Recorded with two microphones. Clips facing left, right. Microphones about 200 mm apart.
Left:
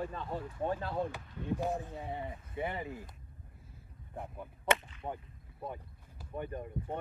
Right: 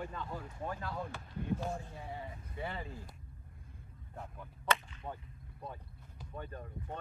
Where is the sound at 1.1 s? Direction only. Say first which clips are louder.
Left 1 dB; 15° left (ahead or behind).